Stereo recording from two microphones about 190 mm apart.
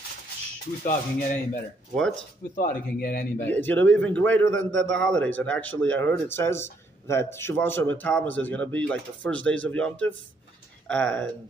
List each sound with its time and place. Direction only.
0.8 s speech: 45° left (ahead or behind)
3.4 s speech: 10° left (ahead or behind)